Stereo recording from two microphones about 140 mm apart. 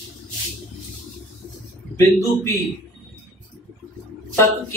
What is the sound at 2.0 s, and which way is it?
Speech, 20° left (ahead or behind).